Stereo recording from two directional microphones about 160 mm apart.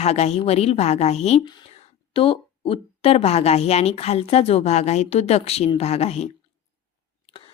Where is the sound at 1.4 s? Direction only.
30° left (ahead or behind).